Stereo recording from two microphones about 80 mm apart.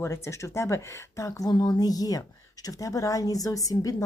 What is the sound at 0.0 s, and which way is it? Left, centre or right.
Speech, left.